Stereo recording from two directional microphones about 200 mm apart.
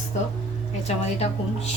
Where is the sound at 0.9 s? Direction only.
30° left (ahead or behind).